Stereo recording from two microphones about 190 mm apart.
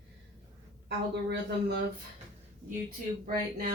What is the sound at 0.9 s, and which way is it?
Speech, 60° right (ahead or behind).